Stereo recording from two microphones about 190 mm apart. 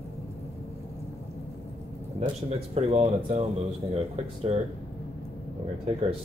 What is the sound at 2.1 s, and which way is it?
Speech, 35° right (ahead or behind).